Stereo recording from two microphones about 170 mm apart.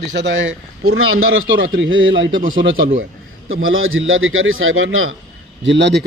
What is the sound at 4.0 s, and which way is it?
Speech, 90° right.